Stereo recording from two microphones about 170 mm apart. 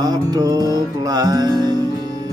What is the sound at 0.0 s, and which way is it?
Music, 25° right (ahead or behind).